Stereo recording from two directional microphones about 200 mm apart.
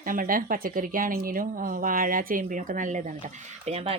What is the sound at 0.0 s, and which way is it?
Speech, 45° right (ahead or behind).